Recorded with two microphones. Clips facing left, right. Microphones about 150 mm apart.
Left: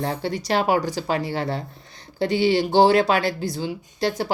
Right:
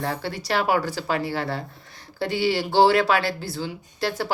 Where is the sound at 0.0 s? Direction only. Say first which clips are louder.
Left 3 dB; 20° left (ahead or behind).